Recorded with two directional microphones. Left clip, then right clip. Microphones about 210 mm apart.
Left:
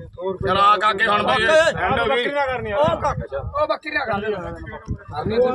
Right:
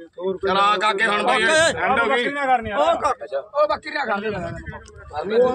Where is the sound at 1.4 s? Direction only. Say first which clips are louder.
Left 2 dB; 25° right (ahead or behind).